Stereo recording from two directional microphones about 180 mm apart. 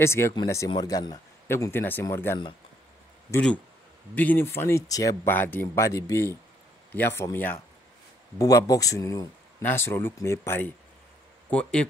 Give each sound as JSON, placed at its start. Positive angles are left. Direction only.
{"t": 0.0, "sound": "speech", "side_deg": 15}